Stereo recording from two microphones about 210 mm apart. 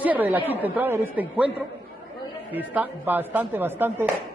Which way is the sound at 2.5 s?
10° right (ahead or behind).